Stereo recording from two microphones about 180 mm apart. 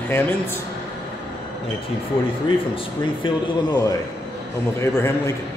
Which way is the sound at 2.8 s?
25° left (ahead or behind).